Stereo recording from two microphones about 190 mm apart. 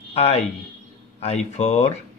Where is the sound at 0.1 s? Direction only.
35° left (ahead or behind).